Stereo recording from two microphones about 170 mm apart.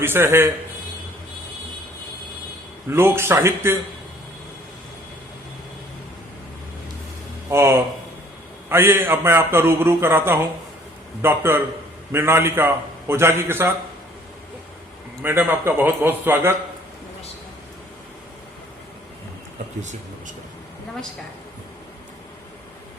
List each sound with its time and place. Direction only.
0.0 s a man's voice: 15° right (ahead or behind)
2.9 s a man's voice: 15° right (ahead or behind)
7.5 s a man's voice: 15° right (ahead or behind)
15.2 s a man's voice: 10° right (ahead or behind)
19.8 s speech: 45° right (ahead or behind)